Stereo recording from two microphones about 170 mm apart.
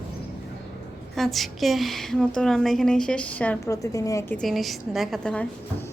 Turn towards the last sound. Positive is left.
turn(degrees=5)  # may be behind; listen again after turning